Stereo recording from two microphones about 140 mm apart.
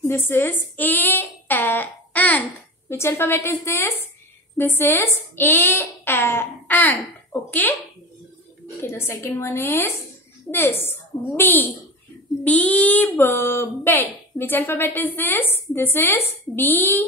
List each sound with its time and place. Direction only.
0.0 s speech: 15° left (ahead or behind)
8.8 s speech: 20° left (ahead or behind)